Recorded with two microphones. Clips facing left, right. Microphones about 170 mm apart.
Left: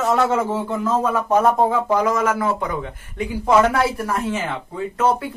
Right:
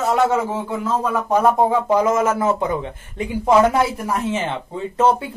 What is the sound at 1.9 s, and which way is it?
Speech, 25° right (ahead or behind).